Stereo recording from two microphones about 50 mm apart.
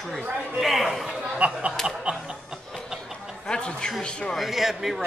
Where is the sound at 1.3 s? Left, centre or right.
Right.